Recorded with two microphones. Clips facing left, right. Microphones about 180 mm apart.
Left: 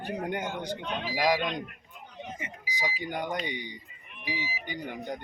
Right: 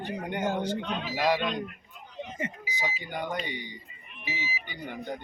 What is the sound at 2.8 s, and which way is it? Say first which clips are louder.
Speech: left 1 dB; 15° left (ahead or behind).